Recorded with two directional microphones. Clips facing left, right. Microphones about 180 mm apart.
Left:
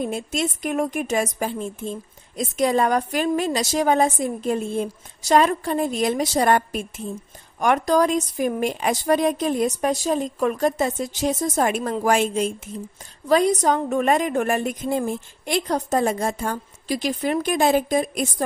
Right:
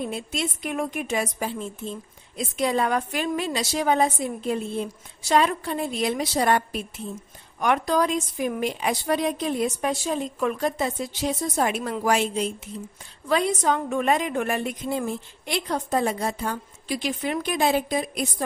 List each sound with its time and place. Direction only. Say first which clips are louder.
0.0 s a woman's voice: left 4 dB; 45° left (ahead or behind)